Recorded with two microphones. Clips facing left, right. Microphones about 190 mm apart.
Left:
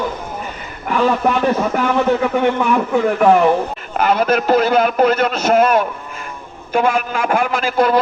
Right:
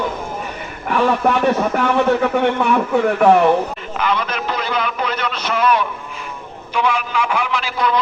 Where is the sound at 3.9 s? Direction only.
45° left (ahead or behind).